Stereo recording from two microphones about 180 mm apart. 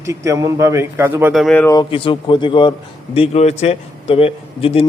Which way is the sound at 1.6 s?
25° left (ahead or behind).